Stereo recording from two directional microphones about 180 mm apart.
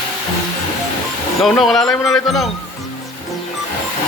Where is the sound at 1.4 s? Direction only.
Centre (ahead or behind).